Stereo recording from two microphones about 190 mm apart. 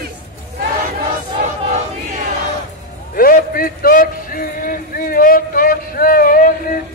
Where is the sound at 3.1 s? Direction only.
50° left (ahead or behind).